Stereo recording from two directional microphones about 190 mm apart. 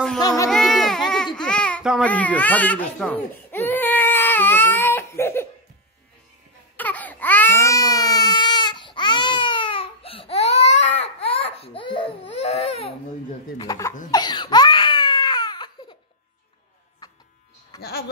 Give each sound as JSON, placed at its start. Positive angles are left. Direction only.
{"t": 0.2, "sound": "a sound", "side_deg": 20}
{"t": 0.5, "sound": "a sound", "side_deg": 0}
{"t": 1.8, "sound": "babbling", "side_deg": -5}
{"t": 2.0, "sound": "baby cry", "side_deg": 10}
{"t": 6.8, "sound": "baby cry", "side_deg": 10}
{"t": 13.7, "sound": "a sound", "side_deg": 15}
{"t": 14.1, "sound": "baby cry", "side_deg": 25}
{"t": 17.0, "sound": "electric shaver", "side_deg": 20}
{"t": 17.7, "sound": "music", "side_deg": 55}